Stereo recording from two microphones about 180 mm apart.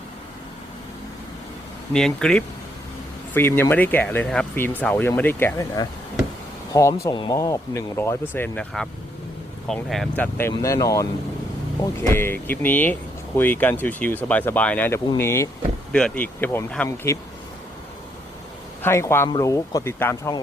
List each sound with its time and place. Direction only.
1.9 s speech: 5° left (ahead or behind)
10.5 s speech: 20° left (ahead or behind)
18.8 s speech: 15° left (ahead or behind)